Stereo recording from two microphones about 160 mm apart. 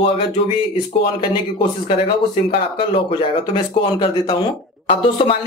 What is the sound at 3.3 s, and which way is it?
Speech, 30° left (ahead or behind).